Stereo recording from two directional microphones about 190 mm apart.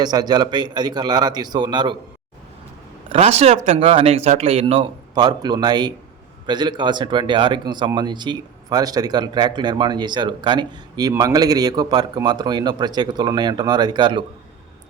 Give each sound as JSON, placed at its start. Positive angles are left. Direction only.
{"t": 0.0, "sound": "a man's voice", "side_deg": -20}
{"t": 3.1, "sound": "a man's voice", "side_deg": -35}